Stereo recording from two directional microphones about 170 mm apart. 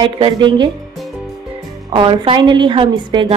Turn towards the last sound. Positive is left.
turn(degrees=-30)  # may be behind; listen again after turning